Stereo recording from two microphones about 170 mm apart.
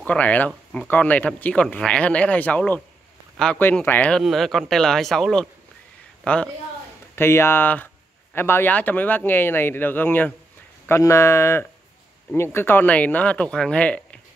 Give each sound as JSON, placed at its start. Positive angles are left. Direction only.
{"t": 0.0, "sound": "speech", "side_deg": 10}